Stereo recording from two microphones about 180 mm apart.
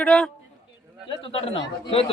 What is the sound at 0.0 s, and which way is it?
Speech, 5° left (ahead or behind).